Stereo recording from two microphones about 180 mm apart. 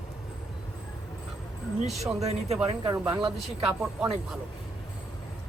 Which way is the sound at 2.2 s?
35° right (ahead or behind).